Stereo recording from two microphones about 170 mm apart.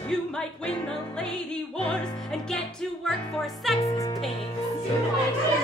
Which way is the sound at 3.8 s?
20° left (ahead or behind).